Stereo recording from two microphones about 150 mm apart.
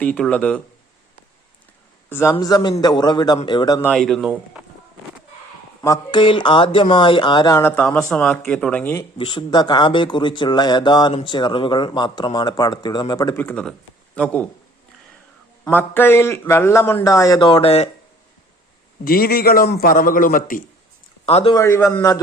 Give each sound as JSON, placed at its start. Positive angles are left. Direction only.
{"t": 0.0, "sound": "speech", "side_deg": 10}
{"t": 2.0, "sound": "a man's voice", "side_deg": 15}
{"t": 2.4, "sound": "speech", "side_deg": 25}
{"t": 3.9, "sound": "speech", "side_deg": 0}
{"t": 5.8, "sound": "speech", "side_deg": 25}
{"t": 7.5, "sound": "speech", "side_deg": 10}
{"t": 9.0, "sound": "speech", "side_deg": 30}
{"t": 13.3, "sound": "speech", "side_deg": 10}
{"t": 15.7, "sound": "speech", "side_deg": 15}
{"t": 19.0, "sound": "a man's voice", "side_deg": 80}
{"t": 21.2, "sound": "a man's voice", "side_deg": 40}
{"t": 21.5, "sound": "speech", "side_deg": 20}